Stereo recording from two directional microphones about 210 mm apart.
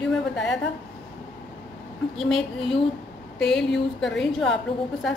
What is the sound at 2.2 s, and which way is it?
A woman's voice, centre (ahead or behind).